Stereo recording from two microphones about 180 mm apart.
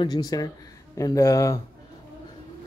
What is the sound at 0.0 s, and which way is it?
A man's voice, 20° left (ahead or behind).